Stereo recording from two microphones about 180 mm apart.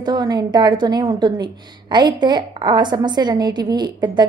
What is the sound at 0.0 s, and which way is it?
A woman's voice, 20° right (ahead or behind).